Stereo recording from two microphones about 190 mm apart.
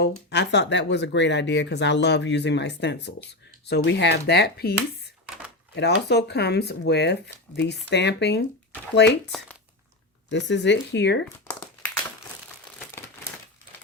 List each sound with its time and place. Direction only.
0.0 s speech: 65° left (ahead or behind)
5.7 s speech: 65° left (ahead or behind)
10.2 s speech: 65° left (ahead or behind)